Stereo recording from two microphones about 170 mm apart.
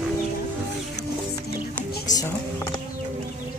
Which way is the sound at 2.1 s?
45° left (ahead or behind).